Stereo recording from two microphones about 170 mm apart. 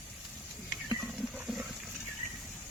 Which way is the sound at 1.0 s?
5° right (ahead or behind).